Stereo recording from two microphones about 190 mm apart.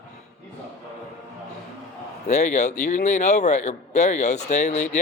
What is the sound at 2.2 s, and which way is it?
A man's voice, 40° left (ahead or behind).